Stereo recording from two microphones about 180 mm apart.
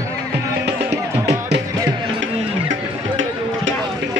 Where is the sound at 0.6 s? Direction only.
70° right (ahead or behind).